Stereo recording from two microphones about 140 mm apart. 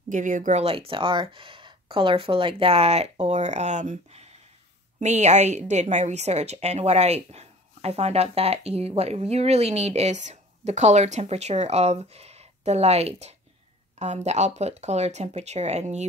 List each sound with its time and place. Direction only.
0.1 s a woman's voice: 65° right (ahead or behind)